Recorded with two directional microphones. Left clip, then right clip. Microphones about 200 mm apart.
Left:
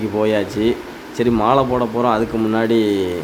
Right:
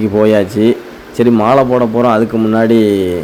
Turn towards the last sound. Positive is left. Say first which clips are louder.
# right 6 dB
turn(degrees=-20)  # may be behind; listen again after turning